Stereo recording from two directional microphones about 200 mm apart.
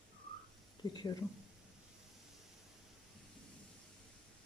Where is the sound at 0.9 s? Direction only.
20° left (ahead or behind).